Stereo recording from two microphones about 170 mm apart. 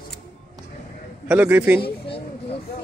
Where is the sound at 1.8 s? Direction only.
30° left (ahead or behind).